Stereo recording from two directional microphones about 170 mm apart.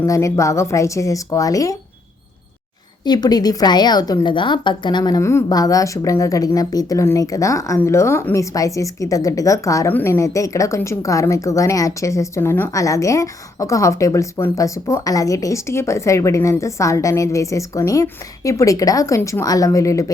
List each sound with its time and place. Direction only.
0.0 s a woman's voice: 20° left (ahead or behind)
3.0 s a woman's voice: 25° left (ahead or behind)